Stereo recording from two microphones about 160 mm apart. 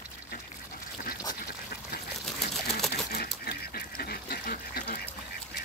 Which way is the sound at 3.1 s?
75° left (ahead or behind).